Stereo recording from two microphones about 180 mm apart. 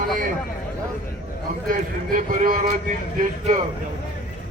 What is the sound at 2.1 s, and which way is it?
Speech, 50° right (ahead or behind).